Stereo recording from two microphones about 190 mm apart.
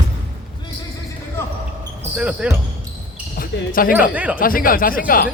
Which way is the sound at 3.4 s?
50° left (ahead or behind).